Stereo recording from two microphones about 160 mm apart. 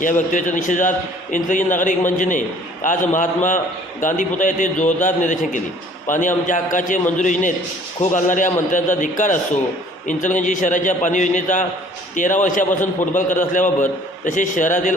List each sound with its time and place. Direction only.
0.0 s a man's voice: 55° left (ahead or behind)